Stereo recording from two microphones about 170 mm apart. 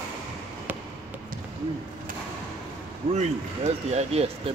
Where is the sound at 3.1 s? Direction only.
40° right (ahead or behind).